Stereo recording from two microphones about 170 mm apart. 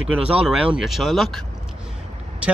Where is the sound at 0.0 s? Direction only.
5° right (ahead or behind).